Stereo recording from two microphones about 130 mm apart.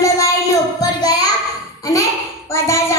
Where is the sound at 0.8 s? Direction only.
30° left (ahead or behind).